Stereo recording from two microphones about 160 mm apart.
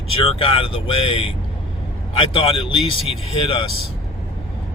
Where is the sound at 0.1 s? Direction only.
35° left (ahead or behind).